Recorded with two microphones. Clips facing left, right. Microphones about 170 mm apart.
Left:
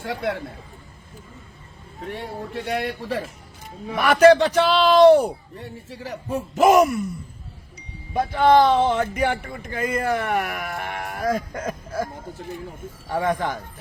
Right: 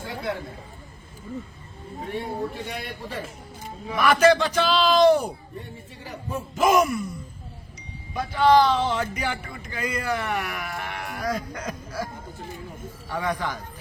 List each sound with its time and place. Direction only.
2.0 s a man's voice: 90° left
3.8 s speech: 35° left (ahead or behind)
4.1 s speech: 65° left (ahead or behind)
6.3 s speech: 35° left (ahead or behind)
8.4 s speech: 55° left (ahead or behind)
13.1 s speech: 50° left (ahead or behind)